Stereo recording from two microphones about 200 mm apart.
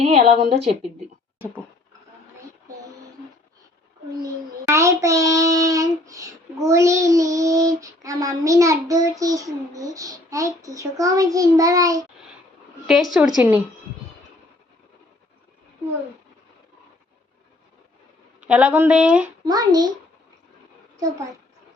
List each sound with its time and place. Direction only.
0.0 s a woman's voice: 30° right (ahead or behind)
0.8 s speech: 5° right (ahead or behind)
4.2 s a child's voice: 15° right (ahead or behind)
12.9 s a woman's voice: centre (ahead or behind)
18.3 s a woman's voice: 5° right (ahead or behind)
19.5 s a child's voice: 20° right (ahead or behind)